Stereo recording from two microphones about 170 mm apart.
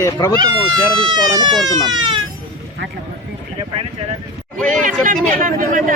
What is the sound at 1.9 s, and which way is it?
Speech, 25° right (ahead or behind).